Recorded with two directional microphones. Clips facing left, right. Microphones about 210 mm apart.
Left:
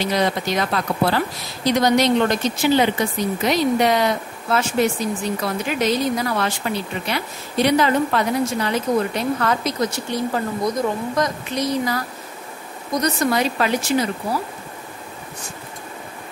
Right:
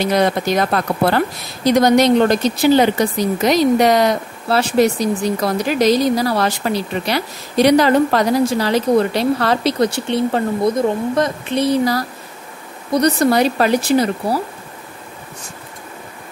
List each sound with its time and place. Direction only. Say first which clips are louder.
0.0 s speech: right 5 dB; 55° right (ahead or behind); by 6.7 s 35° right (ahead or behind)
7.7 s speech: right 4 dB; 40° right (ahead or behind)